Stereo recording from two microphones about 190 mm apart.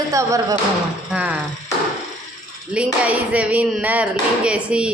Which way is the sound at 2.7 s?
5° right (ahead or behind).